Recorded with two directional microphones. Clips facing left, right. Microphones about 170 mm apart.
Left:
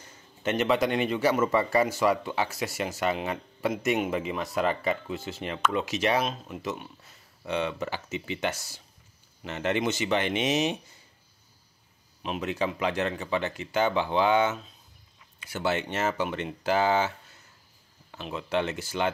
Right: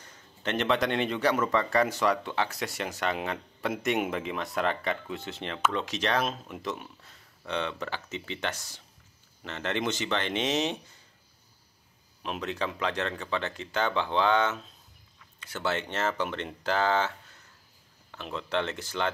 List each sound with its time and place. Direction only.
0.0 s a man's voice: 5° left (ahead or behind)
12.2 s speech: 5° left (ahead or behind)
18.1 s speech: 10° left (ahead or behind)